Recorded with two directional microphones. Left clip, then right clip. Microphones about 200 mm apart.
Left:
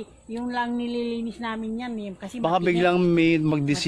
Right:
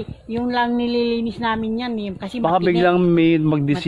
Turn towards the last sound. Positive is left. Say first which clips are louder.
# right 4 dB
turn(degrees=30)  # may be behind; listen again after turning